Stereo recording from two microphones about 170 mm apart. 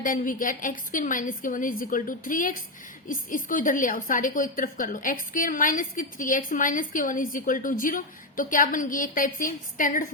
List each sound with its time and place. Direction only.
0.0 s a woman's voice: 50° left (ahead or behind)